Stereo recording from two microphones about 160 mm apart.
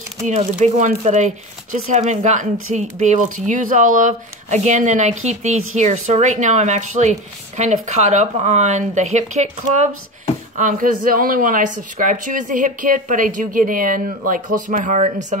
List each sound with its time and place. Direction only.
0.2 s speech: 50° right (ahead or behind)